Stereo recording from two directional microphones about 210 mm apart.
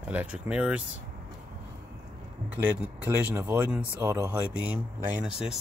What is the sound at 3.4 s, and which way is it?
Speech, 10° right (ahead or behind).